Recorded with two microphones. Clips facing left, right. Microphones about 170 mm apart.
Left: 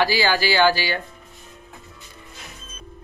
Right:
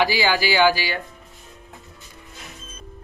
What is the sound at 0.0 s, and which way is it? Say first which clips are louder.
Speech: even; 15° right (ahead or behind).